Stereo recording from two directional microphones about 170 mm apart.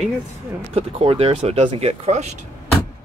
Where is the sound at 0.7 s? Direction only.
35° right (ahead or behind).